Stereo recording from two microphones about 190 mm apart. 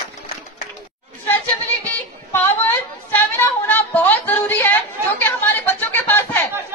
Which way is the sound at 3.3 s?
10° left (ahead or behind).